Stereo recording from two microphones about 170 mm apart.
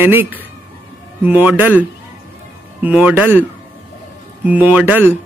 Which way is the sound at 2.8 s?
10° right (ahead or behind).